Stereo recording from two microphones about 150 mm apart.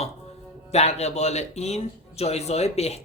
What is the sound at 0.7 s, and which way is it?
Speech, 45° left (ahead or behind).